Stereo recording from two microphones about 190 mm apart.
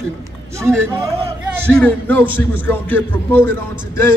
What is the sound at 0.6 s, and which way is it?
Speech, 15° right (ahead or behind).